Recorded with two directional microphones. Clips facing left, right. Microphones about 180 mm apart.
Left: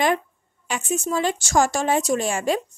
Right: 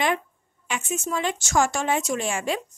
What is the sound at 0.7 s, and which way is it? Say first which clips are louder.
A woman's voice: left 3 dB; 35° left (ahead or behind).